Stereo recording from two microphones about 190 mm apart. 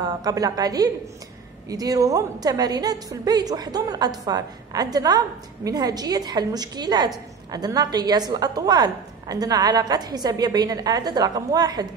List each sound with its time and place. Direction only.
0.0 s a woman's voice: 20° right (ahead or behind)